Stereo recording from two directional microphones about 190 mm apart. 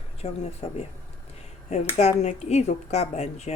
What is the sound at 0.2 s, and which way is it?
Speech, 30° left (ahead or behind).